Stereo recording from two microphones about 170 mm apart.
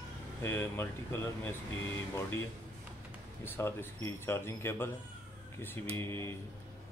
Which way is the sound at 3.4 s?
10° left (ahead or behind).